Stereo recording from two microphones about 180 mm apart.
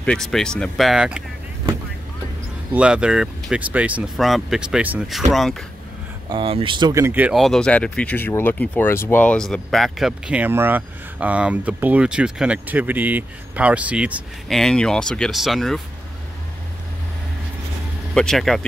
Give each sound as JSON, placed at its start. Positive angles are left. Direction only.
{"t": 0.0, "sound": "speech", "side_deg": 5}
{"t": 2.7, "sound": "speech", "side_deg": -5}
{"t": 6.3, "sound": "speech", "side_deg": -30}
{"t": 7.3, "sound": "speech", "side_deg": 0}
{"t": 14.6, "sound": "speech", "side_deg": 5}
{"t": 18.1, "sound": "speech", "side_deg": 5}